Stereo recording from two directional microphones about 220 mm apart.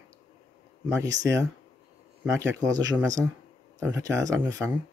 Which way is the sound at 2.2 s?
10° right (ahead or behind).